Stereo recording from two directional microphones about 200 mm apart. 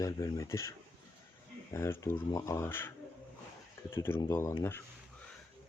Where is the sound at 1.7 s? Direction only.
15° left (ahead or behind).